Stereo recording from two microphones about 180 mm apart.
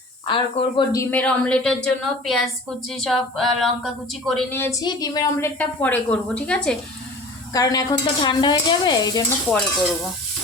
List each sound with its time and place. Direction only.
0.3 s speech: 25° left (ahead or behind)
1.1 s a woman's voice: 5° left (ahead or behind)
4.5 s a woman's voice: 15° left (ahead or behind)
5.5 s a woman's voice: 10° left (ahead or behind)
7.5 s speech: 20° left (ahead or behind)
9.5 s a woman's voice: 5° left (ahead or behind)